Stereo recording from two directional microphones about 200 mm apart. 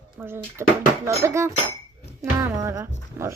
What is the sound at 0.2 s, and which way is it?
Speech, 10° right (ahead or behind).